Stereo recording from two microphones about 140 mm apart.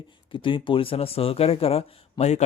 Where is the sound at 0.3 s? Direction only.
35° left (ahead or behind).